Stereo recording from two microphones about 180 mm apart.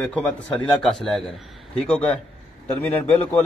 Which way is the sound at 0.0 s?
5° left (ahead or behind).